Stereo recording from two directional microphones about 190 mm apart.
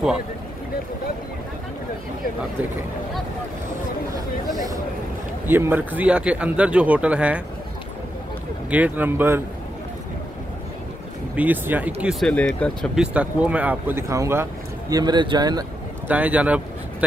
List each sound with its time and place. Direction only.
4.5 s a sound: 20° right (ahead or behind)
5.5 s speech: 10° right (ahead or behind)
8.6 s speech: 10° right (ahead or behind)
11.3 s speech: 10° right (ahead or behind)
16.1 s speech: 10° right (ahead or behind)